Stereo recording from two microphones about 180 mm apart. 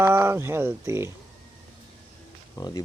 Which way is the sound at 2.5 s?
20° left (ahead or behind).